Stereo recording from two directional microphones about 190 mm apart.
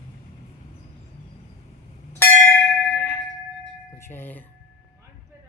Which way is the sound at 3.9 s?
10° left (ahead or behind).